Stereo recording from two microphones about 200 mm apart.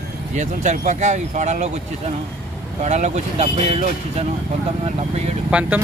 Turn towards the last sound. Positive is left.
turn(degrees=-5)  # may be behind; listen again after turning